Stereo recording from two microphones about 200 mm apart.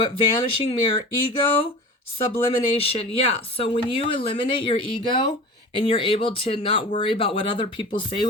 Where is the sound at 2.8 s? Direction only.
30° left (ahead or behind).